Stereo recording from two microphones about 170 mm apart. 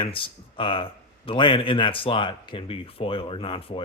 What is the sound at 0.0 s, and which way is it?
A man's voice, 30° left (ahead or behind).